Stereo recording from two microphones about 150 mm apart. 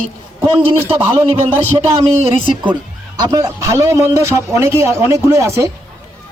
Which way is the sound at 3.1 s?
25° right (ahead or behind).